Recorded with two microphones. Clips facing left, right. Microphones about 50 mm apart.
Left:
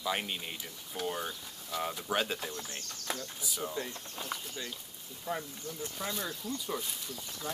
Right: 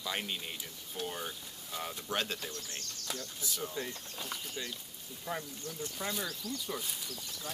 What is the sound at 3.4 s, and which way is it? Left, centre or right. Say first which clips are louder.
Speech: left 2 dB; centre.